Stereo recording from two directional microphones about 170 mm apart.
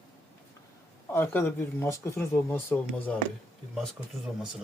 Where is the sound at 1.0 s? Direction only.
15° left (ahead or behind).